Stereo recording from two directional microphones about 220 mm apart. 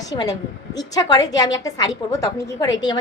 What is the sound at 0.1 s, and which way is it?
A woman's voice, 15° left (ahead or behind).